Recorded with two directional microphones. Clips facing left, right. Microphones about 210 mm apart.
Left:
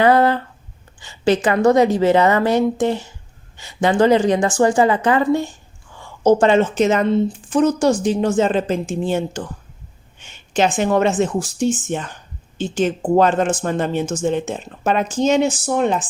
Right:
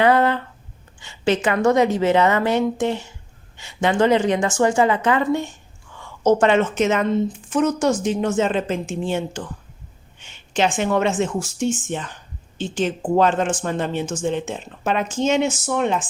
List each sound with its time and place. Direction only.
0.0 s a woman's voice: 40° left (ahead or behind)